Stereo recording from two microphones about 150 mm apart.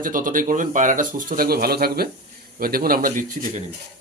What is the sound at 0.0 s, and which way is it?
Speech, 65° right (ahead or behind).